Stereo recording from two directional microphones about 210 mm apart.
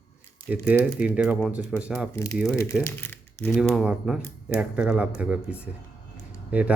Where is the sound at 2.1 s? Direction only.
15° left (ahead or behind).